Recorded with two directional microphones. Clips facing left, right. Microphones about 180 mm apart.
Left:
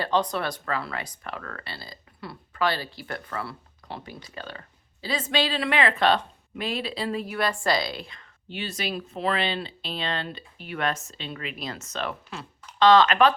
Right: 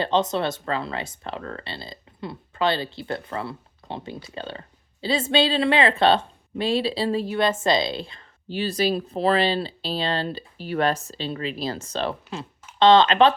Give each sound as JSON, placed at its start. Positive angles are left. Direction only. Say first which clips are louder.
{"t": 0.0, "sound": "speech", "louder": "right 3 dB", "side_deg": -25}